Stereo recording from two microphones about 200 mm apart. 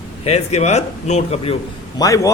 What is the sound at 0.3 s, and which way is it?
A man's voice, 35° left (ahead or behind).